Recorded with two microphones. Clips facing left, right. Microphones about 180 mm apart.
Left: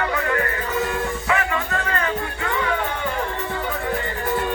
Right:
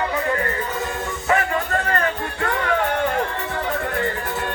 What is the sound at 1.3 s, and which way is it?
Music, 45° right (ahead or behind).